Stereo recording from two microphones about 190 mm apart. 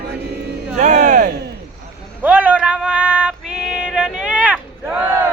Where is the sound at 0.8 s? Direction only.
40° right (ahead or behind).